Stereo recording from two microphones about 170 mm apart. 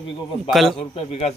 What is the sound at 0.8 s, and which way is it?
Speech, 35° left (ahead or behind).